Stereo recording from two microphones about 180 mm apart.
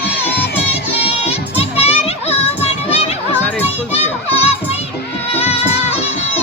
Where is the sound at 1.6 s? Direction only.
35° left (ahead or behind).